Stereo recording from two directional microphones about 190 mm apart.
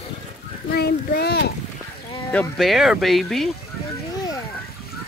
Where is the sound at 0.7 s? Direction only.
55° left (ahead or behind).